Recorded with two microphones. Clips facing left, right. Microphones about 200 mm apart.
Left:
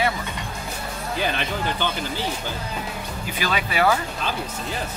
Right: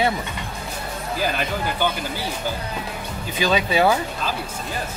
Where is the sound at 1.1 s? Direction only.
5° right (ahead or behind).